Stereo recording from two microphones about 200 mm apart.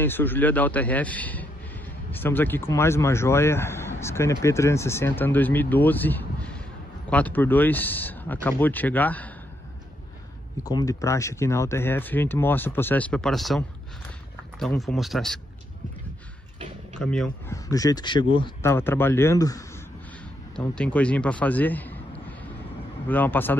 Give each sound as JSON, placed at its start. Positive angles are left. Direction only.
{"t": 0.0, "sound": "speech", "side_deg": 10}
{"t": 10.6, "sound": "speech", "side_deg": 20}
{"t": 16.9, "sound": "speech", "side_deg": 5}
{"t": 17.5, "sound": "speech", "side_deg": 15}
{"t": 20.5, "sound": "a man's voice", "side_deg": 5}